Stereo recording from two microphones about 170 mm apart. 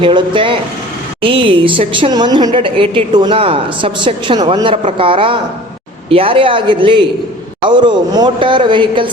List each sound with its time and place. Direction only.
0.0 s a woman's voice: 30° right (ahead or behind)